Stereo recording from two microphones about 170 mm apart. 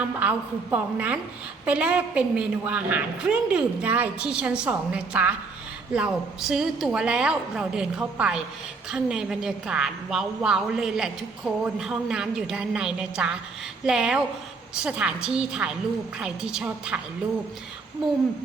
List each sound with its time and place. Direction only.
0.0 s a woman's voice: 10° right (ahead or behind)